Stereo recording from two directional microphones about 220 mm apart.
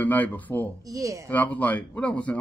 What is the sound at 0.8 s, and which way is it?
Speech, 15° right (ahead or behind).